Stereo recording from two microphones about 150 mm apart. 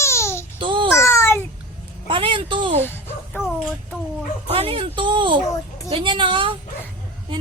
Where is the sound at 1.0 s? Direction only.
20° left (ahead or behind).